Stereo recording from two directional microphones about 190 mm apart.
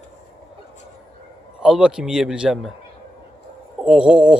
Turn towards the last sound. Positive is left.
turn(degrees=-5)  # may be behind; listen again after turning